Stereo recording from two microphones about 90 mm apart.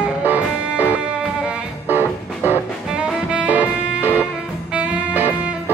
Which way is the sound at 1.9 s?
25° right (ahead or behind).